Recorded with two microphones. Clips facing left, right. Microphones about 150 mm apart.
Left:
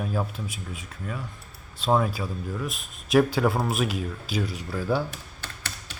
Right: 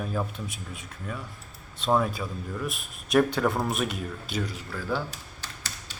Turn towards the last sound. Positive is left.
turn(degrees=55)  # may be behind; listen again after turning